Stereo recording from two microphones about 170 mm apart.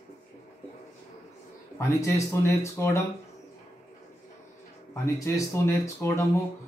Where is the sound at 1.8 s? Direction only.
15° left (ahead or behind).